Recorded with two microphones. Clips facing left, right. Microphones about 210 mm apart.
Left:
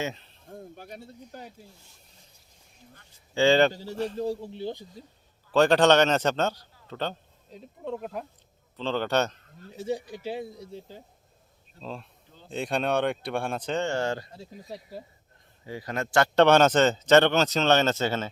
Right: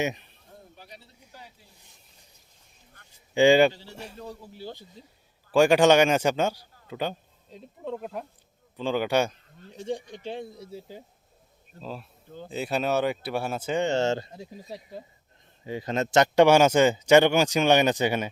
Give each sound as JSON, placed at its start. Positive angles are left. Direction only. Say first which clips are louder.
{"t": 0.0, "sound": "speech", "louder": "right 4 dB", "side_deg": -15}
{"t": 0.4, "sound": "a sound", "louder": "left 8 dB", "side_deg": 50}
{"t": 3.3, "sound": "speech", "louder": "right 3 dB", "side_deg": -15}
{"t": 3.7, "sound": "a man's voice", "louder": "left 3 dB", "side_deg": 40}
{"t": 4.2, "sound": "speech", "louder": "left 9 dB", "side_deg": 30}
{"t": 5.0, "sound": "a man's voice", "louder": "left 2 dB", "side_deg": -10}
{"t": 7.5, "sound": "speech", "louder": "even", "side_deg": 0}
{"t": 8.7, "sound": "speech", "louder": "right 2 dB", "side_deg": -10}
{"t": 9.7, "sound": "speech", "louder": "left 1 dB", "side_deg": 5}